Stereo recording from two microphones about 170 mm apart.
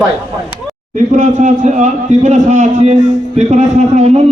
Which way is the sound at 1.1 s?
45° right (ahead or behind).